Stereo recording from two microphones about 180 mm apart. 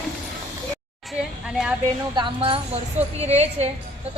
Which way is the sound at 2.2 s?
30° right (ahead or behind).